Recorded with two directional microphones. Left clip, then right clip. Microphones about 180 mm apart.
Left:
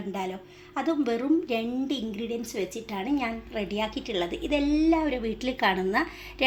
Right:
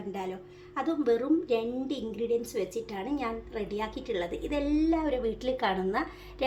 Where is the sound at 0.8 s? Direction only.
35° left (ahead or behind).